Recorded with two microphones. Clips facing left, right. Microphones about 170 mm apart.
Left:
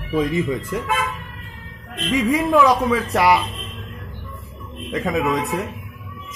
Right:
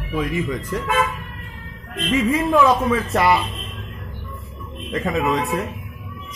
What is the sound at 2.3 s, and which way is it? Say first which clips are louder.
Speech: left 1 dB; 10° left (ahead or behind).